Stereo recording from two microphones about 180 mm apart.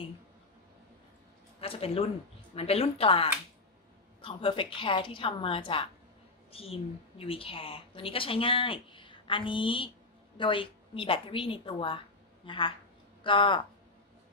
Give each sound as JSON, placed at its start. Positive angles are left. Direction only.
{"t": 1.6, "sound": "a woman's voice", "side_deg": 35}